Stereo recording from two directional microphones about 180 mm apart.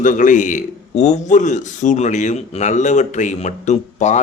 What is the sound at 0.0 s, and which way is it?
A man's voice, 45° left (ahead or behind).